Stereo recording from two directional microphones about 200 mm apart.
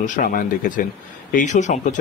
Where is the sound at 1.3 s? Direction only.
40° left (ahead or behind).